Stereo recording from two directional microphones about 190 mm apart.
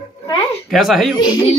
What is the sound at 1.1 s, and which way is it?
Speech, 25° left (ahead or behind).